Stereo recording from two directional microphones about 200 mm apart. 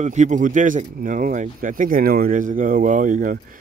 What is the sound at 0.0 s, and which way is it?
Speech, 35° right (ahead or behind).